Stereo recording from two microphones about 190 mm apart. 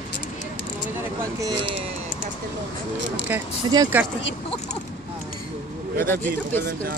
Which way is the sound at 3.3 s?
10° right (ahead or behind).